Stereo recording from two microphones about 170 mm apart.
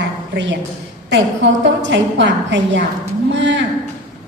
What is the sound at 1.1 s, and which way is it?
A woman's voice, 90° right.